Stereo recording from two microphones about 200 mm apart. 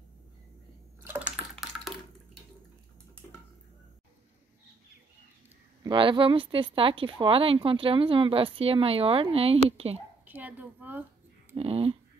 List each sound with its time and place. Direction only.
1.0 s a sound: 10° right (ahead or behind)
5.9 s speech: 25° right (ahead or behind)
10.2 s a woman's voice: 10° right (ahead or behind)
11.5 s speech: 30° right (ahead or behind)